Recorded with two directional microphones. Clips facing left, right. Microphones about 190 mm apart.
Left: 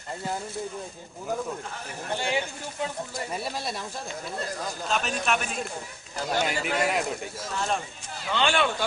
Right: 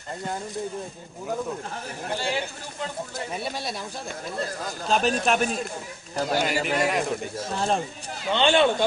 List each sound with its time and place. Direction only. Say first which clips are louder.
2.1 s a man's voice: left 1 dB; 15° left (ahead or behind)
3.3 s a man's voice: right 1 dB; centre (ahead or behind)
4.8 s speech: right 6 dB; 35° right (ahead or behind)
6.3 s a man's voice: right 2 dB; centre (ahead or behind)
7.4 s speech: right 4 dB; 35° right (ahead or behind)